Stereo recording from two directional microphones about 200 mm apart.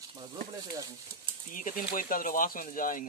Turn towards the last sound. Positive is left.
turn(degrees=40)  # may be behind; listen again after turning